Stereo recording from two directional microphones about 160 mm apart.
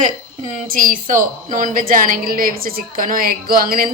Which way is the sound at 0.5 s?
60° right (ahead or behind).